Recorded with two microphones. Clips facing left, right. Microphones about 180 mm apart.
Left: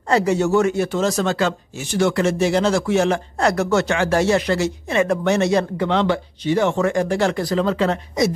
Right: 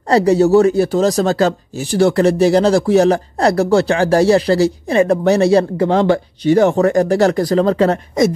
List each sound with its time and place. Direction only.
0.1 s speech: 35° right (ahead or behind)